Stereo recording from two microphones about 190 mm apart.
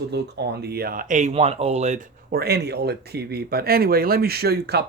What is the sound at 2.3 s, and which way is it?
Speech, 55° right (ahead or behind).